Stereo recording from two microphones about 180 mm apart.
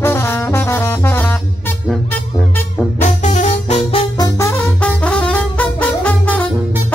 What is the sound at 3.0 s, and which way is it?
Music, 40° left (ahead or behind).